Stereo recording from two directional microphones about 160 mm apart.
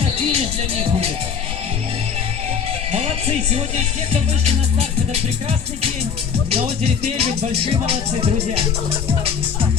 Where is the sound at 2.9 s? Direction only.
40° right (ahead or behind).